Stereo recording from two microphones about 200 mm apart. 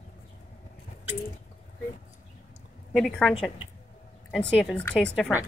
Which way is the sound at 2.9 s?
Centre (ahead or behind).